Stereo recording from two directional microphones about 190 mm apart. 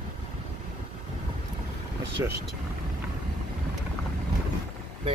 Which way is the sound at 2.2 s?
15° right (ahead or behind).